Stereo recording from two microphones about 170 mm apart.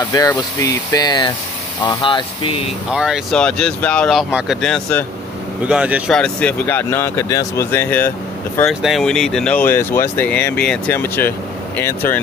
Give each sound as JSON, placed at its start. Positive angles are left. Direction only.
{"t": 0.1, "sound": "speech", "side_deg": 20}
{"t": 2.9, "sound": "speech", "side_deg": -5}
{"t": 5.7, "sound": "speech", "side_deg": -5}
{"t": 6.1, "sound": "speech", "side_deg": 5}
{"t": 8.6, "sound": "speech", "side_deg": 0}